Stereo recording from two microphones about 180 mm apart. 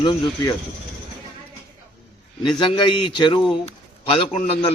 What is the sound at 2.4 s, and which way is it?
A man's voice, 25° left (ahead or behind).